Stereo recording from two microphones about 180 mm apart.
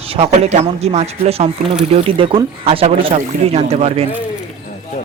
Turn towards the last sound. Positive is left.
turn(degrees=-35)  # may be behind; listen again after turning